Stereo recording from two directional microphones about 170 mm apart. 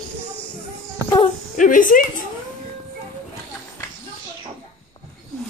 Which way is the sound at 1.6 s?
50° left (ahead or behind).